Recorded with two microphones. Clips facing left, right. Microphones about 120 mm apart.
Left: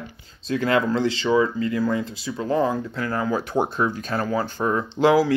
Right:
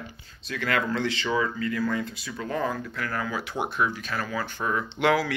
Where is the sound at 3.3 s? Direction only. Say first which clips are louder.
Left 4 dB; 40° left (ahead or behind).